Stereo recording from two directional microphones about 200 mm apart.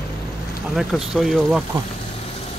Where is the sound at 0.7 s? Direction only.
Centre (ahead or behind).